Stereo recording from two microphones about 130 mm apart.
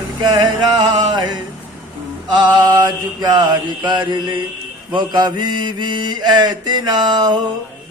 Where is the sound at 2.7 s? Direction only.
30° right (ahead or behind).